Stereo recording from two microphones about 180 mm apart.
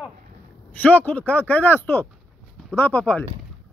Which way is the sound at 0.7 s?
10° left (ahead or behind).